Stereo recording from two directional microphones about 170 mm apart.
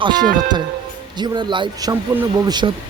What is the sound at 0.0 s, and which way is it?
Speech, 25° right (ahead or behind).